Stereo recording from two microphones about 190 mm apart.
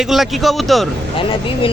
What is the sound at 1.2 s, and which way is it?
Speech, 25° left (ahead or behind).